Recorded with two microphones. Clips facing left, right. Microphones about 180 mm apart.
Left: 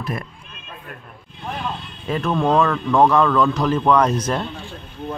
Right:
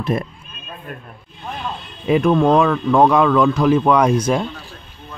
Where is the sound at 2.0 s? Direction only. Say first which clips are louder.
Right 6 dB; 10° right (ahead or behind).